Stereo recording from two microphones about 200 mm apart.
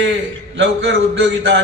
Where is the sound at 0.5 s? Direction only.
65° right (ahead or behind).